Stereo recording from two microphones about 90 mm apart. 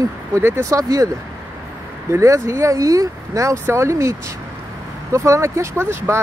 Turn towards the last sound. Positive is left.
turn(degrees=-30)  # may be behind; listen again after turning